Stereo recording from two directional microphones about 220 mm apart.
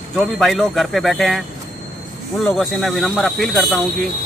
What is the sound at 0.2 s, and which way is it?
Speech, centre (ahead or behind).